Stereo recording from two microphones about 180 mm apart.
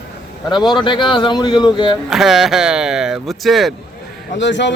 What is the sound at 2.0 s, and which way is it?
Speech, centre (ahead or behind).